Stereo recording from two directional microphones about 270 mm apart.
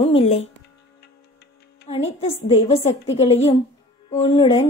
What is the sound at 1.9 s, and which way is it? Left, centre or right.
A woman's voice, left.